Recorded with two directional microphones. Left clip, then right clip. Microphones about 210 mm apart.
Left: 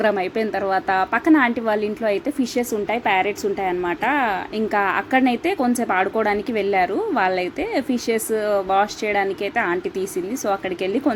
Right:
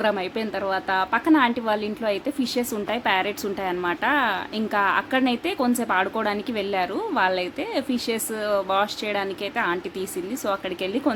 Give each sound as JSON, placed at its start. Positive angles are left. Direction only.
{"t": 0.0, "sound": "a woman's voice", "side_deg": 10}